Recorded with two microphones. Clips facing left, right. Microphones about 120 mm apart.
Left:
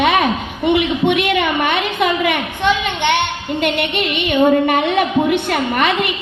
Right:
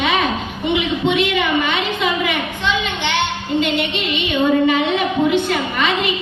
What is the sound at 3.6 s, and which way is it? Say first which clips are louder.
Music: left 1 dB; 55° left (ahead or behind).